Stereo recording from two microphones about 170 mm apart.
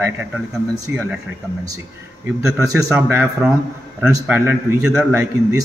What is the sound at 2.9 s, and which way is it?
A man's voice, 10° right (ahead or behind).